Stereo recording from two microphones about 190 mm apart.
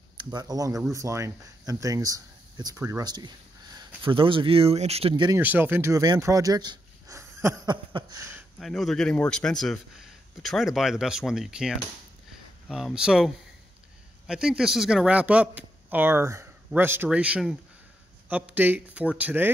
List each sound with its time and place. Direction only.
0.2 s speech: 20° right (ahead or behind)
5.4 s speech: 10° right (ahead or behind)
8.5 s speech: centre (ahead or behind)